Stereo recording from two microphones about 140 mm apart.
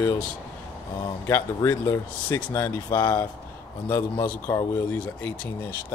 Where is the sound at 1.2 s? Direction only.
20° left (ahead or behind).